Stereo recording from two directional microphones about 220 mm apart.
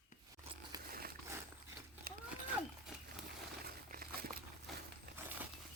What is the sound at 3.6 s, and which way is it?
Crumpling, 40° right (ahead or behind).